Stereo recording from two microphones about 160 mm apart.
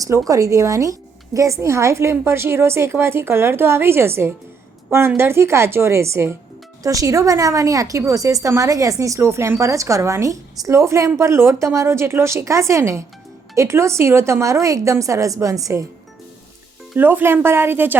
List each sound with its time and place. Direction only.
0.0 s a woman's voice: 20° right (ahead or behind)
16.9 s a woman's voice: 10° right (ahead or behind)